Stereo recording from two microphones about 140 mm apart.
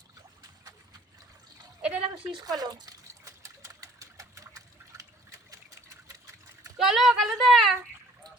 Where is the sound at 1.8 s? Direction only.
5° right (ahead or behind).